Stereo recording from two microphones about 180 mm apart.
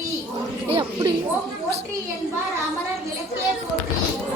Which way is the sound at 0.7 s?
25° right (ahead or behind).